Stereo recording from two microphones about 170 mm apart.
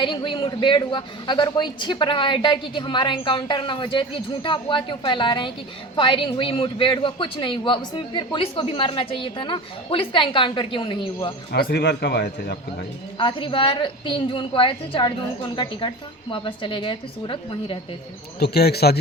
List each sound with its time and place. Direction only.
0.0 s a man's voice: 30° left (ahead or behind)
11.5 s a man's voice: 70° left (ahead or behind)
13.1 s a man's voice: 30° left (ahead or behind)
18.3 s a man's voice: 70° left (ahead or behind)